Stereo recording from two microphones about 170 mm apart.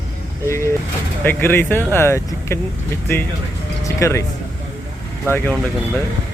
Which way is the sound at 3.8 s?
15° left (ahead or behind).